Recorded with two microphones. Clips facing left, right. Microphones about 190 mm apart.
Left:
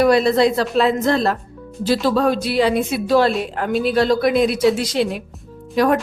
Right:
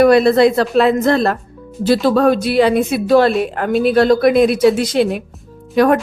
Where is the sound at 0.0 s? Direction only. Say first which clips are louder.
Right 4 dB; 55° right (ahead or behind).